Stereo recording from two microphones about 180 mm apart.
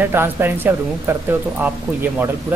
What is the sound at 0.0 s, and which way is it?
Speech, 10° right (ahead or behind).